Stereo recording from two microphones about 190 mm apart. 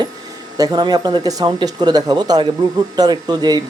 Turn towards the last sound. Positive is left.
turn(degrees=-20)  # may be behind; listen again after turning